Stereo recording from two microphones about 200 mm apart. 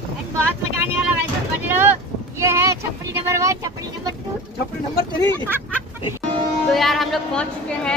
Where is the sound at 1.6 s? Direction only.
10° right (ahead or behind).